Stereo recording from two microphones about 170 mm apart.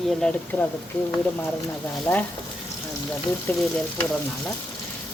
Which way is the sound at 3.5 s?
10° left (ahead or behind).